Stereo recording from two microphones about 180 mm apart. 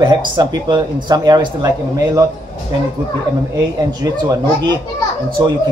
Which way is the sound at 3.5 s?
20° right (ahead or behind).